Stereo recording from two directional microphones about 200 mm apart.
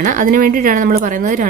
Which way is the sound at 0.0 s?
40° right (ahead or behind).